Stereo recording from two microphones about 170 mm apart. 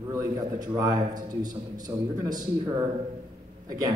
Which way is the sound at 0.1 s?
20° right (ahead or behind).